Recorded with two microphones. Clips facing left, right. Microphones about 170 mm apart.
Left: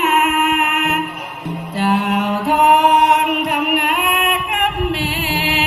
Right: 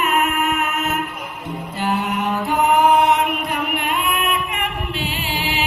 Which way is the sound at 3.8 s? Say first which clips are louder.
Left 3 dB; 70° left (ahead or behind).